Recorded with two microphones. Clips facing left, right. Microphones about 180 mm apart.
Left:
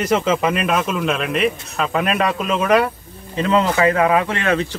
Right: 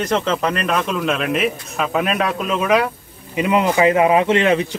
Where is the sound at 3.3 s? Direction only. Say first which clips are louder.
Right 1 dB; 15° right (ahead or behind).